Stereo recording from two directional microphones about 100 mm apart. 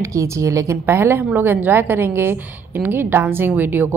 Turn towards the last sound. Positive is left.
turn(degrees=-20)  # may be behind; listen again after turning